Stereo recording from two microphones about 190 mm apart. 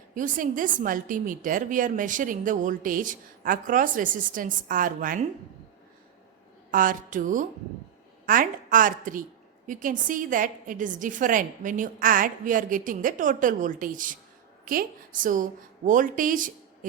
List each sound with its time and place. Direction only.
0.1 s a woman's voice: 45° right (ahead or behind)
6.7 s a woman's voice: 45° right (ahead or behind)